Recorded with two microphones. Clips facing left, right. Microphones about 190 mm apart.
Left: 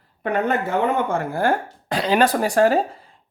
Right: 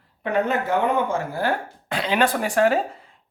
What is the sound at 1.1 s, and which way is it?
Speech, 50° left (ahead or behind).